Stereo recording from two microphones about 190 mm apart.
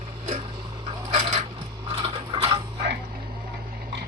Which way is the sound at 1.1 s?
35° right (ahead or behind).